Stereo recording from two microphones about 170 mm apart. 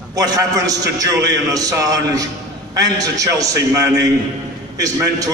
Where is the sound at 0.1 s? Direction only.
20° right (ahead or behind).